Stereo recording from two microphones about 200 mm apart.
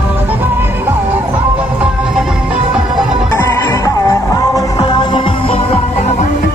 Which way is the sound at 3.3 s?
15° left (ahead or behind).